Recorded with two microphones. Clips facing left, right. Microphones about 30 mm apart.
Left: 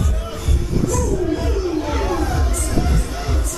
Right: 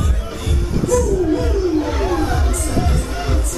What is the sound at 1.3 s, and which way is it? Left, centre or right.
Wild animals, centre.